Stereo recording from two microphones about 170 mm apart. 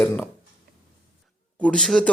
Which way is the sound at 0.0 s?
10° left (ahead or behind).